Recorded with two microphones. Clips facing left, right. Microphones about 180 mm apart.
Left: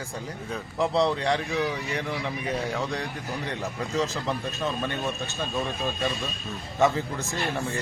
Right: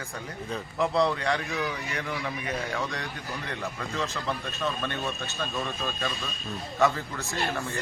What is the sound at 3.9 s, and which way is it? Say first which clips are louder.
Speech: left 5 dB; 35° left (ahead or behind).